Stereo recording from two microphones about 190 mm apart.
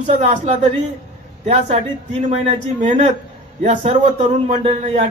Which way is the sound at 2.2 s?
35° right (ahead or behind).